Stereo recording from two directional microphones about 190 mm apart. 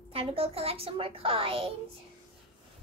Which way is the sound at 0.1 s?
30° right (ahead or behind).